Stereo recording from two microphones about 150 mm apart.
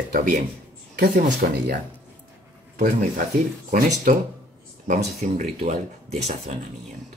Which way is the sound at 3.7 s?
60° right (ahead or behind).